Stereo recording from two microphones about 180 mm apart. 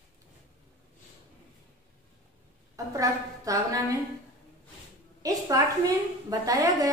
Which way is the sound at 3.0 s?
20° right (ahead or behind).